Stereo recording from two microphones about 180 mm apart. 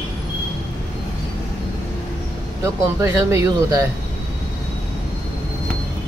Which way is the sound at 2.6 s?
15° right (ahead or behind).